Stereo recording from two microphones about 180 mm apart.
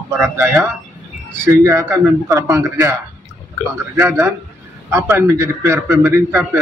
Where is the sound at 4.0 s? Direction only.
15° right (ahead or behind).